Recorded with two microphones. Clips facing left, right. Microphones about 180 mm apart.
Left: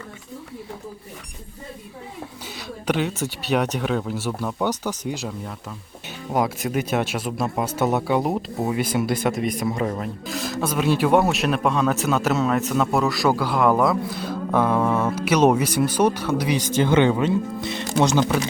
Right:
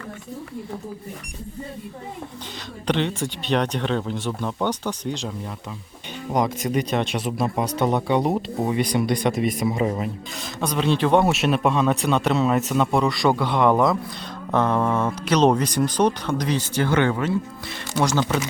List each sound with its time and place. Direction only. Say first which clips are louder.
2.8 s speech: even; 5° left (ahead or behind)
6.3 s speech: even; 5° left (ahead or behind); by 18.3 s 20° left (ahead or behind)